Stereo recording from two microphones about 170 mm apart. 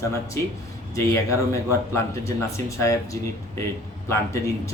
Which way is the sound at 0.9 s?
15° left (ahead or behind).